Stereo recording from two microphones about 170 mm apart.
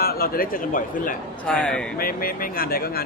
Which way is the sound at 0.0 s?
60° left (ahead or behind).